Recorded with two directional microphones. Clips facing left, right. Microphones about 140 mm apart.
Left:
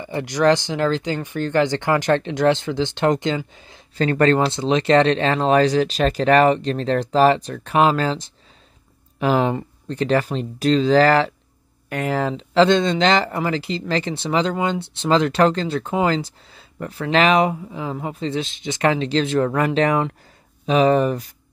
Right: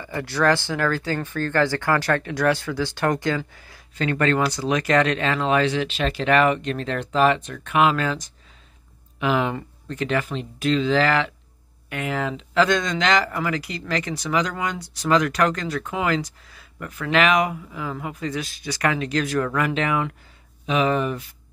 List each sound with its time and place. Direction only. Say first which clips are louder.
0.0 s speech: left 4 dB; 20° left (ahead or behind)
4.0 s speech: left 4 dB; 35° left (ahead or behind)